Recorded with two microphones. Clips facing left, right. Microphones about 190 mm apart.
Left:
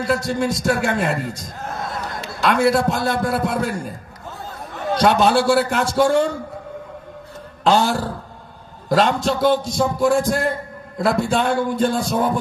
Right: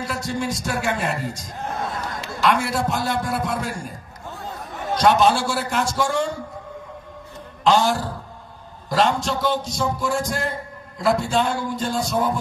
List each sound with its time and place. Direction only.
0.0 s a man's voice: 55° left (ahead or behind)
4.9 s a man's voice: 55° left (ahead or behind)
7.6 s a man's voice: 55° left (ahead or behind)